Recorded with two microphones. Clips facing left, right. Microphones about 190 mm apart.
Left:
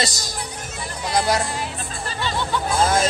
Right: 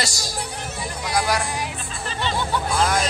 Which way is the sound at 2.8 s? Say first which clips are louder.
Left 3 dB; 25° left (ahead or behind).